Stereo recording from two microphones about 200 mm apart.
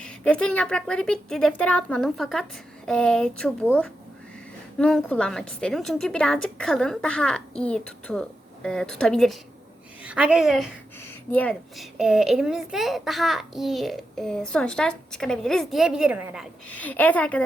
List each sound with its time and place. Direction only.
0.0 s a child's voice: 5° left (ahead or behind)
16.6 s a woman's voice: 5° left (ahead or behind)